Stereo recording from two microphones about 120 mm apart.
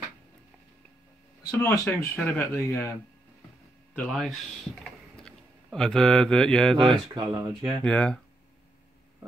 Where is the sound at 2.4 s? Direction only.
20° left (ahead or behind).